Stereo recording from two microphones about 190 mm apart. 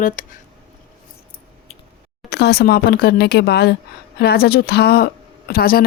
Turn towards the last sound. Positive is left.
turn(degrees=50)  # may be behind; listen again after turning